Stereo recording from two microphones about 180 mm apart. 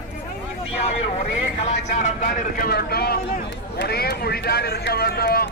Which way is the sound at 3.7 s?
60° left (ahead or behind).